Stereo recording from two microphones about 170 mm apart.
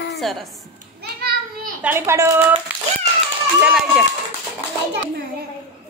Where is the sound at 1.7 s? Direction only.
10° right (ahead or behind).